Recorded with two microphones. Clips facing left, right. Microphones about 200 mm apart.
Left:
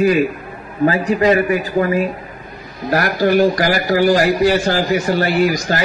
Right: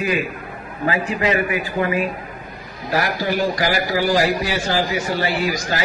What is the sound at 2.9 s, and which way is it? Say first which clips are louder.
A man's voice: left 6 dB; 50° left (ahead or behind).